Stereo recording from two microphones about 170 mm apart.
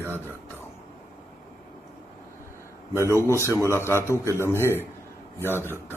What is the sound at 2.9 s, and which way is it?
A man's voice, 15° left (ahead or behind).